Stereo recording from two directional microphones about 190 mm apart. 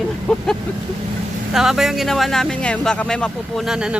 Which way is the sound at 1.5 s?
Centre (ahead or behind).